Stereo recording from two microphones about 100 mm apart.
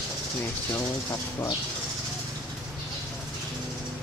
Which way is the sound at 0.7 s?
30° left (ahead or behind).